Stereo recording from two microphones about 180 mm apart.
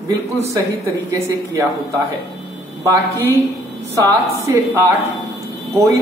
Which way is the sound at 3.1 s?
15° right (ahead or behind).